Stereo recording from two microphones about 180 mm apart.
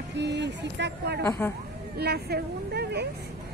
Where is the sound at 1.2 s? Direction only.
15° left (ahead or behind).